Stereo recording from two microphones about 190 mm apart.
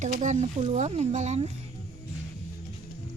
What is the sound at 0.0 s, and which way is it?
Speech, 40° right (ahead or behind).